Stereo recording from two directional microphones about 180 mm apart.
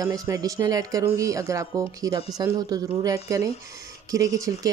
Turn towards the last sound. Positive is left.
turn(degrees=-20)  # may be behind; listen again after turning